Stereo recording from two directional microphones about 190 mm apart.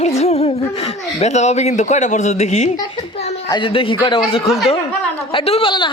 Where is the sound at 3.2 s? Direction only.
35° left (ahead or behind).